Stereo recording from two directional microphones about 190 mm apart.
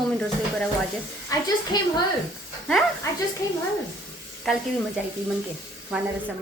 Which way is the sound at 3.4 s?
15° left (ahead or behind).